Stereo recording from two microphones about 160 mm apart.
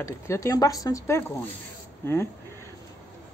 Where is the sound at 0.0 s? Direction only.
20° left (ahead or behind).